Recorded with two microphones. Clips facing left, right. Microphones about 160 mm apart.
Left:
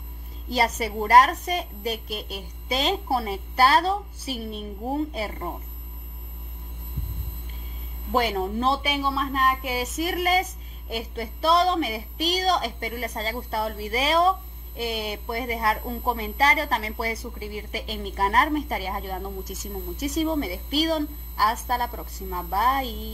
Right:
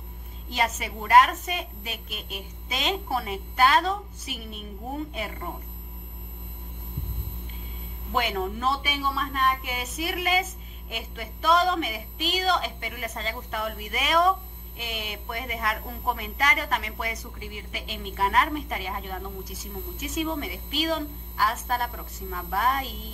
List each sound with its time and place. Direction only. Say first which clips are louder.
0.5 s a woman's voice: left 4 dB; 35° left (ahead or behind)
8.1 s a woman's voice: left 4 dB; 35° left (ahead or behind)